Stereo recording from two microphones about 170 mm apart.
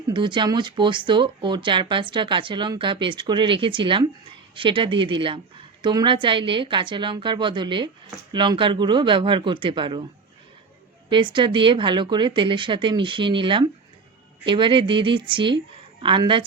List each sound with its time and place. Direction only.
0.1 s speech: 25° right (ahead or behind)
11.1 s a woman's voice: 30° right (ahead or behind)